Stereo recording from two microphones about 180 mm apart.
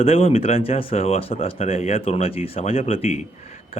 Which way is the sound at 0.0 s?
35° left (ahead or behind).